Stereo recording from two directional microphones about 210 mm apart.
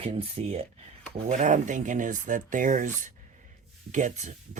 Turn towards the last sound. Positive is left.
turn(degrees=-35)  # may be behind; listen again after turning